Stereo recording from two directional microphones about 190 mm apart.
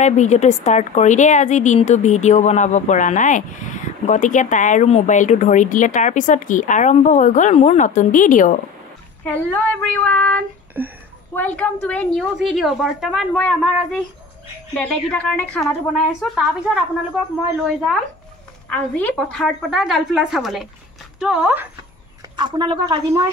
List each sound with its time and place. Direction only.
0.0 s a woman's voice: 40° left (ahead or behind)
9.2 s child singing: 10° left (ahead or behind)
10.8 s speech: 10° right (ahead or behind)
11.3 s a woman's voice: 10° left (ahead or behind)
14.8 s a woman's voice: 5° left (ahead or behind)
18.7 s a woman's voice: 5° left (ahead or behind)
22.4 s speech: 25° right (ahead or behind)